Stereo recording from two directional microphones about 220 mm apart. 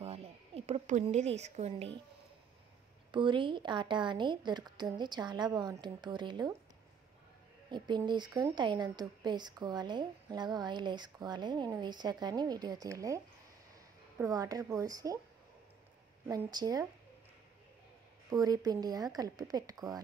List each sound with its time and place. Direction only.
0.0 s a sound: 25° right (ahead or behind)
3.1 s speech: 20° right (ahead or behind)
7.7 s speech: 20° right (ahead or behind)
16.3 s speech: 15° right (ahead or behind)
18.3 s speech: 15° right (ahead or behind)